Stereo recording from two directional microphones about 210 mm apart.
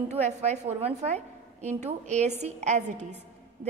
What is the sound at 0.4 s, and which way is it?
A woman's voice, 30° right (ahead or behind).